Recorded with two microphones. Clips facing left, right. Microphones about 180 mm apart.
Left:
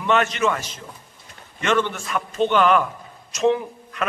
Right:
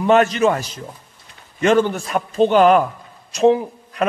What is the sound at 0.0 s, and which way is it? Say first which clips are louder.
A man's voice: right 6 dB; 35° right (ahead or behind).